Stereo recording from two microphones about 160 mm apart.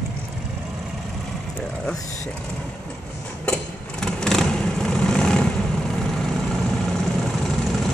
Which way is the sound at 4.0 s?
5° left (ahead or behind).